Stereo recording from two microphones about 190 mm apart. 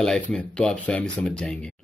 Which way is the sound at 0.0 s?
5° left (ahead or behind).